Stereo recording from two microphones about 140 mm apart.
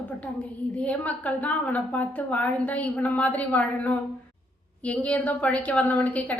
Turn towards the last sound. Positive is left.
turn(degrees=10)  # may be behind; listen again after turning